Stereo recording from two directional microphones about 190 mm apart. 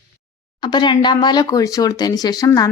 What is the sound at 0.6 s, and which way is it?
Speech, 25° left (ahead or behind).